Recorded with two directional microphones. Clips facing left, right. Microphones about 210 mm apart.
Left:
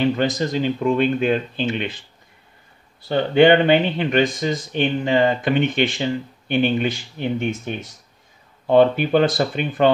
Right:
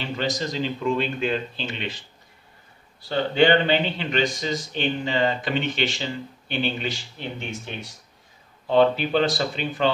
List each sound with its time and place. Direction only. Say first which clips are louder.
0.0 s speech: left 8 dB; 55° left (ahead or behind)
3.0 s speech: left 5 dB; 55° left (ahead or behind)